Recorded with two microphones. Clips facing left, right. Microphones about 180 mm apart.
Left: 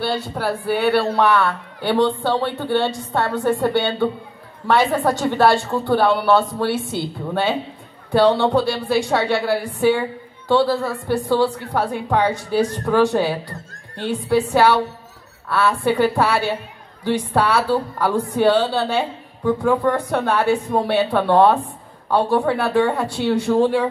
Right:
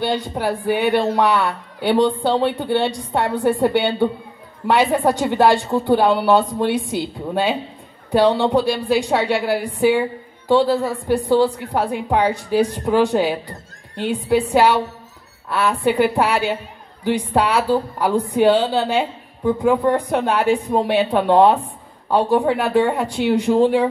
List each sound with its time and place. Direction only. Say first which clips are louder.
0.0 s a woman's voice: right 2 dB; 15° right (ahead or behind)